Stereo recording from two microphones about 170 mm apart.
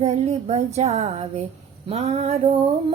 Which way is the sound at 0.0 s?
40° right (ahead or behind).